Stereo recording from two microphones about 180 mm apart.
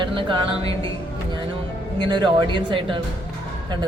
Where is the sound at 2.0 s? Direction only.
25° right (ahead or behind).